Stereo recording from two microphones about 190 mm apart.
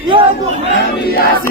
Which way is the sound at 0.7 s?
55° left (ahead or behind).